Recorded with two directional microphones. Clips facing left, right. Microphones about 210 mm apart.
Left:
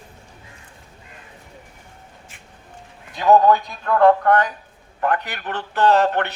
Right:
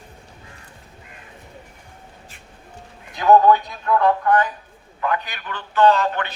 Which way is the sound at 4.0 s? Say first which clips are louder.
Left 4 dB; 60° left (ahead or behind).